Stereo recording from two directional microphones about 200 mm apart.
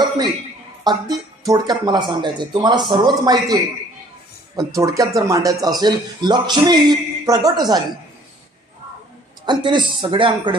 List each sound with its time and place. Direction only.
0.9 s a man's voice: 20° right (ahead or behind)
9.5 s a man's voice: 25° right (ahead or behind)